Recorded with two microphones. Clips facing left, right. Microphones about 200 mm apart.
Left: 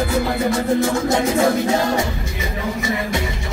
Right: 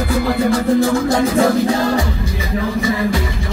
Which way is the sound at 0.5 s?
25° left (ahead or behind).